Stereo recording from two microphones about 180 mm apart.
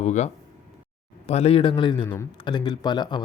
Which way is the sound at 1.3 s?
35° left (ahead or behind).